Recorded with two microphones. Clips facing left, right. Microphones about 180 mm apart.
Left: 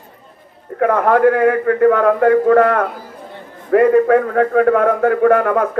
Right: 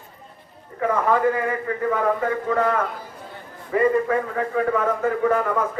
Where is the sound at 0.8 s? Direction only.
65° left (ahead or behind).